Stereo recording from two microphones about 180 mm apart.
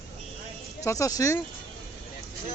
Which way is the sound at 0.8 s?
15° left (ahead or behind).